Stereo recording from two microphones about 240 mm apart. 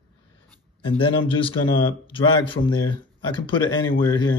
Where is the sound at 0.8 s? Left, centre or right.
Left.